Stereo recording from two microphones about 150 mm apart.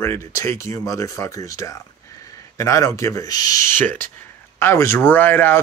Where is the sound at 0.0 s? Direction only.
20° left (ahead or behind).